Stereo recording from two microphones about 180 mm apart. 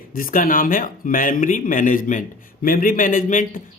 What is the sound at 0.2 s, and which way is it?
Speech, 50° left (ahead or behind).